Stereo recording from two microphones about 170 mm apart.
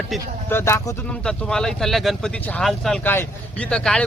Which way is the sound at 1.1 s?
5° left (ahead or behind).